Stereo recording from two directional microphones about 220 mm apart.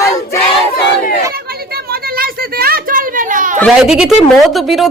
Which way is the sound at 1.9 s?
45° right (ahead or behind).